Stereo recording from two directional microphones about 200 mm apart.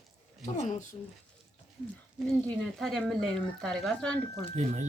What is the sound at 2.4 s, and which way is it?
Speech, 5° left (ahead or behind).